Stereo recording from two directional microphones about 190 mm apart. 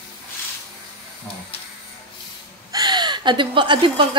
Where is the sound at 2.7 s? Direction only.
20° right (ahead or behind).